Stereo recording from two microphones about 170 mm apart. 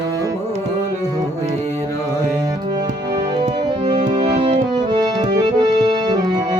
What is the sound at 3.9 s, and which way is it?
Music, 45° right (ahead or behind).